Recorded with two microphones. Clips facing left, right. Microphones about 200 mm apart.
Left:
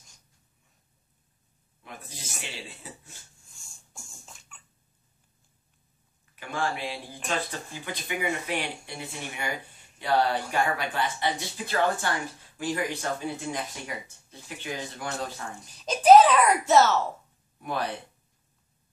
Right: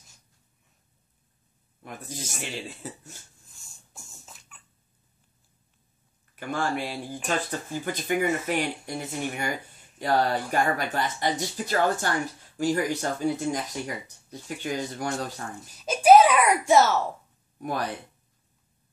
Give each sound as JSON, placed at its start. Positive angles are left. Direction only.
{"t": 1.8, "sound": "speech", "side_deg": -45}
{"t": 3.9, "sound": "beatboxing", "side_deg": -5}
{"t": 6.3, "sound": "speech", "side_deg": -45}
{"t": 15.8, "sound": "a child's voice", "side_deg": -10}
{"t": 17.6, "sound": "speech", "side_deg": -40}